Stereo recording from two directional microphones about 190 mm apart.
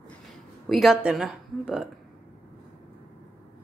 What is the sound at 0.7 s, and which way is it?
Speech, centre (ahead or behind).